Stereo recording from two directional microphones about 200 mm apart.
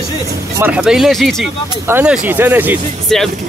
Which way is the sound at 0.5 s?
10° right (ahead or behind).